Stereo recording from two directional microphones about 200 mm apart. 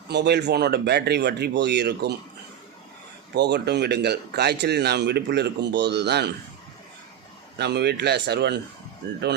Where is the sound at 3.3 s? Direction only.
55° right (ahead or behind).